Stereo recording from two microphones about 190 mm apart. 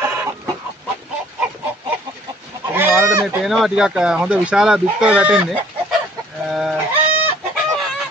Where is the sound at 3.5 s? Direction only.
Centre (ahead or behind).